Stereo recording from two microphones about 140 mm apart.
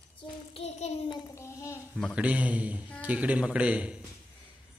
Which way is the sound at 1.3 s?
20° left (ahead or behind).